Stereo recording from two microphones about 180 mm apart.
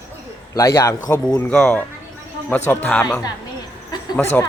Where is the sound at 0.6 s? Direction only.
15° left (ahead or behind).